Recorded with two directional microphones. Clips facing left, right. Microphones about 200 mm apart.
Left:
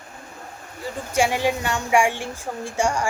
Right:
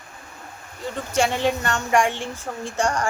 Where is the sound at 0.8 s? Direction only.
10° left (ahead or behind).